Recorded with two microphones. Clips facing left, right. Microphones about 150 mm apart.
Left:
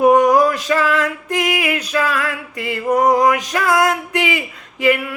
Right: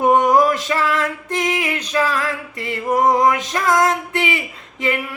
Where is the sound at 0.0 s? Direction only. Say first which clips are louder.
Left 2 dB; 25° right (ahead or behind).